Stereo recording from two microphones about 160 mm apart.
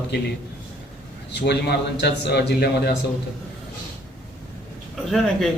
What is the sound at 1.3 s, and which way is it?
A man's voice, 90° left.